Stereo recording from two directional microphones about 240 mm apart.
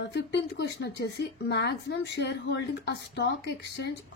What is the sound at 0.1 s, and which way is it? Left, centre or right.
A woman's voice, left.